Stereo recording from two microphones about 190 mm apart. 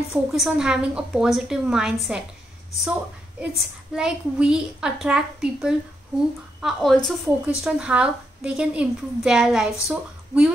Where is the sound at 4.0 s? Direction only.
5° right (ahead or behind).